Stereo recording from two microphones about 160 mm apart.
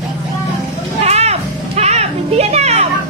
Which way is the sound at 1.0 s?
40° right (ahead or behind).